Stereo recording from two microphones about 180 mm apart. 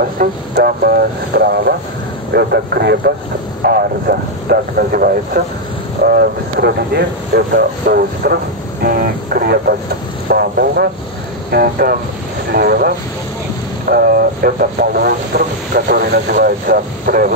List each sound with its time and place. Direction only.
0.0 s speech: 55° right (ahead or behind)